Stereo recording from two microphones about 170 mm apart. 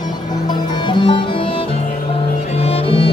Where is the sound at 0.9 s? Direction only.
25° left (ahead or behind).